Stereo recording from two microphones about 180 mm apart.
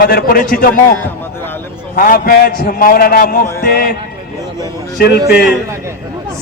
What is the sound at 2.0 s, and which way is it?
A man's voice, 55° left (ahead or behind).